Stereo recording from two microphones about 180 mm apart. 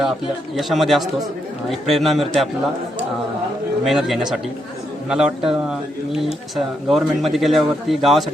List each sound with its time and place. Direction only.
0.5 s a man's voice: centre (ahead or behind)
3.8 s a man's voice: centre (ahead or behind)